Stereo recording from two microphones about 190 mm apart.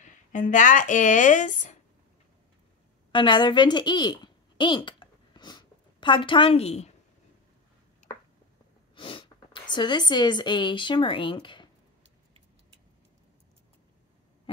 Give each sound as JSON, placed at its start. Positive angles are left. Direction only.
{"t": 0.0, "sound": "speech", "side_deg": 40}
{"t": 3.1, "sound": "a woman's voice", "side_deg": 25}
{"t": 8.9, "sound": "speech", "side_deg": 25}